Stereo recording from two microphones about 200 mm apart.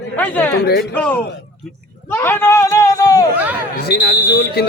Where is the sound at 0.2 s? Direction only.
10° left (ahead or behind).